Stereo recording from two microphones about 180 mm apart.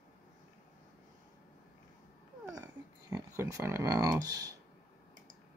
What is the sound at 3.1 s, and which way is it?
Speech, 20° right (ahead or behind).